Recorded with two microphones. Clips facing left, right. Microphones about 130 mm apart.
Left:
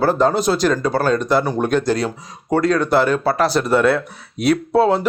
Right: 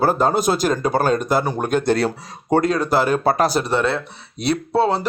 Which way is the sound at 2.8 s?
5° right (ahead or behind).